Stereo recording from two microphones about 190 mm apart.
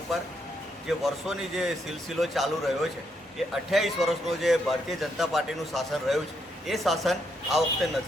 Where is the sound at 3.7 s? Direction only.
Centre (ahead or behind).